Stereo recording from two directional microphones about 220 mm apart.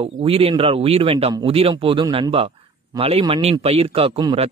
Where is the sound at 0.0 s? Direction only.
25° right (ahead or behind).